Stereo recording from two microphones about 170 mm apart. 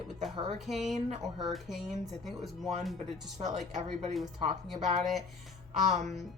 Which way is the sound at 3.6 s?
40° right (ahead or behind).